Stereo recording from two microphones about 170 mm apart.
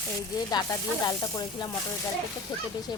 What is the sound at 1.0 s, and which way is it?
A woman's voice, 25° left (ahead or behind).